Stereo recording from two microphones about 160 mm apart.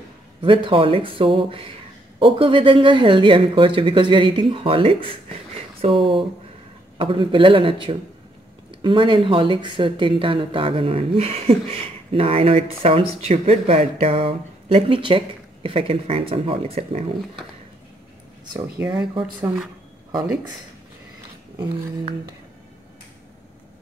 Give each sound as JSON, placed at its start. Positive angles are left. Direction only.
{"t": 0.7, "sound": "speech", "side_deg": -35}
{"t": 18.5, "sound": "speech", "side_deg": -25}